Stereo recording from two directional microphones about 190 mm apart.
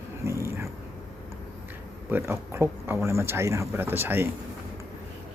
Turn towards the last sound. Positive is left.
turn(degrees=-10)  # may be behind; listen again after turning